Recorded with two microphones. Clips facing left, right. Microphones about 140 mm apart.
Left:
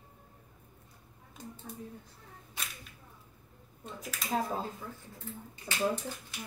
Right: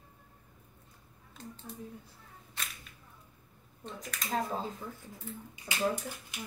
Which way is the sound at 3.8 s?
5° left (ahead or behind).